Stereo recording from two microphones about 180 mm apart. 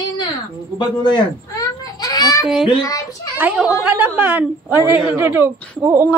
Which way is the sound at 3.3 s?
10° right (ahead or behind).